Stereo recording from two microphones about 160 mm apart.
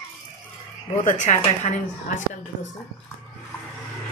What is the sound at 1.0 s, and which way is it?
A woman's voice, 45° left (ahead or behind).